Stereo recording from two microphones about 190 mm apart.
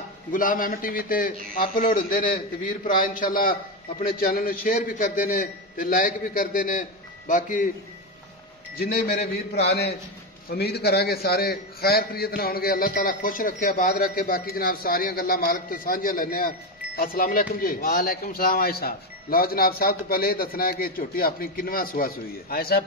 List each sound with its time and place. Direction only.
0.3 s a man's voice: 45° left (ahead or behind)
8.7 s a man's voice: 55° left (ahead or behind)